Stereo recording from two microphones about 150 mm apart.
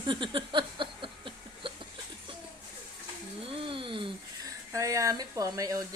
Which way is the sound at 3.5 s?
35° right (ahead or behind).